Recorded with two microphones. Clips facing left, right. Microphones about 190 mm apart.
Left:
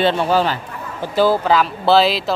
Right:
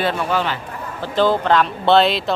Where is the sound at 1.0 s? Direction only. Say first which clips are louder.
Left 2 dB; 10° left (ahead or behind).